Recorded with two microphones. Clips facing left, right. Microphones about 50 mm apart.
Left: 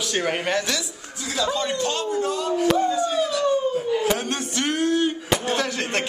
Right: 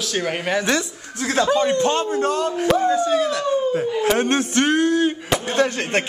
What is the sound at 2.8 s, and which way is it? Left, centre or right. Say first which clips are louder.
Howl: right 4 dB; right.